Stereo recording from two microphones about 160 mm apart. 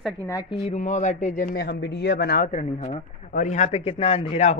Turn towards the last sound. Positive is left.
turn(degrees=40)  # may be behind; listen again after turning